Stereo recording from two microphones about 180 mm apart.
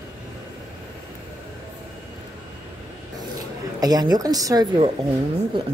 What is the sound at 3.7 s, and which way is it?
Speech, 20° right (ahead or behind).